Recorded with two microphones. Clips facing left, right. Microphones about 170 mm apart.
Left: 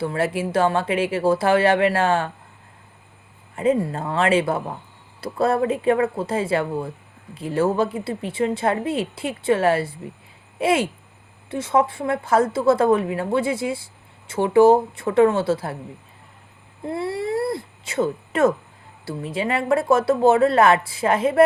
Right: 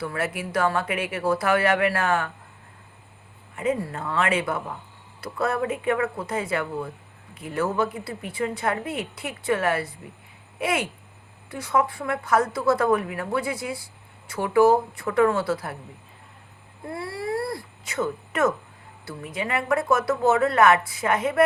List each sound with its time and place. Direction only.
0.0 s a woman's voice: 30° left (ahead or behind)
3.5 s a woman's voice: 30° left (ahead or behind)
16.8 s a woman's voice: 25° left (ahead or behind)